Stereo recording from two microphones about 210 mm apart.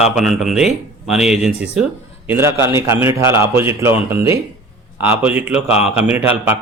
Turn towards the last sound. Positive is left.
turn(degrees=-10)  # may be behind; listen again after turning